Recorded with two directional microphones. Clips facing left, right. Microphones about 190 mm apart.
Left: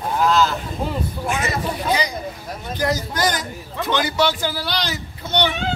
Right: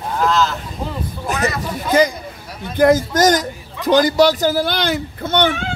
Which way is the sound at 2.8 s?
50° right (ahead or behind).